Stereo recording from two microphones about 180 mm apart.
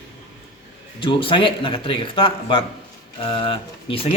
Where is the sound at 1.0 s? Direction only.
25° left (ahead or behind).